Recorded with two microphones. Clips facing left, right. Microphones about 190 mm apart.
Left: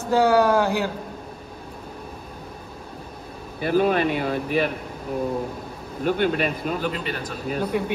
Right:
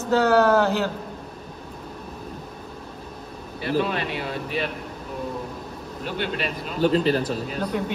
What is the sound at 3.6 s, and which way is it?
Speech, 50° left (ahead or behind).